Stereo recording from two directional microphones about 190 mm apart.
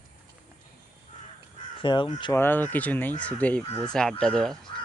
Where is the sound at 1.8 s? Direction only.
25° left (ahead or behind).